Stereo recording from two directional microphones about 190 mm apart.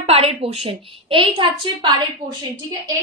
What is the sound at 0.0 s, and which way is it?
A woman's voice, 30° right (ahead or behind).